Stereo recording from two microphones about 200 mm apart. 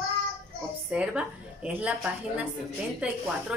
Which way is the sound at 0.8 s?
5° right (ahead or behind).